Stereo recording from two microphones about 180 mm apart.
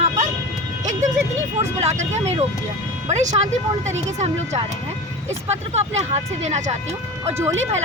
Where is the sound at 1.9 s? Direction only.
40° right (ahead or behind).